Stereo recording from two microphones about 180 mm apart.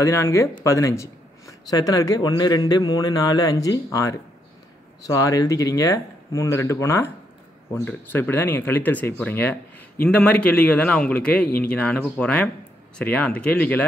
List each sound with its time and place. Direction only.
0.0 s speech: 15° left (ahead or behind)